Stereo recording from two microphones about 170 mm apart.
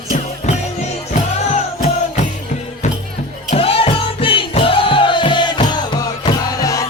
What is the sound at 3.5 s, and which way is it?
Music, 35° left (ahead or behind).